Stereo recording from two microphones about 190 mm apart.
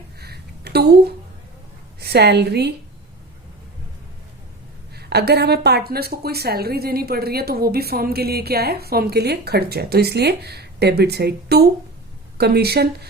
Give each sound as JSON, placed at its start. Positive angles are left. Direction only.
{"t": 0.2, "sound": "a sound", "side_deg": -55}
{"t": 2.0, "sound": "a woman's voice", "side_deg": -60}
{"t": 4.9, "sound": "a woman's voice", "side_deg": -60}